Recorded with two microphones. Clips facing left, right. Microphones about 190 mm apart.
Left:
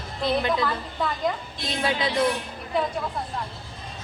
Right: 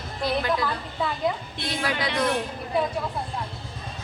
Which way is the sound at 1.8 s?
25° left (ahead or behind).